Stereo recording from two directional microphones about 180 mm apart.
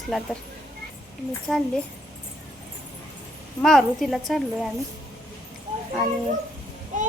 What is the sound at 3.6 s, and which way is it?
Speech, centre (ahead or behind).